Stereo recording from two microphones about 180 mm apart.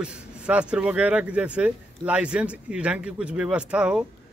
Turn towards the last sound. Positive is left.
turn(degrees=-5)  # may be behind; listen again after turning